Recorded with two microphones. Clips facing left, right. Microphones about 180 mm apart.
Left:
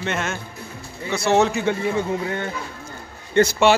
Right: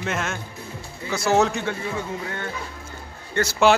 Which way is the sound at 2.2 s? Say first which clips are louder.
Left 5 dB; 20° left (ahead or behind).